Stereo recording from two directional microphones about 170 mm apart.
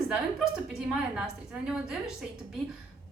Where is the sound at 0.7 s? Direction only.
5° right (ahead or behind).